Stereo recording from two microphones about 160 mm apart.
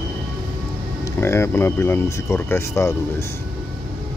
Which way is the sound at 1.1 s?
15° left (ahead or behind).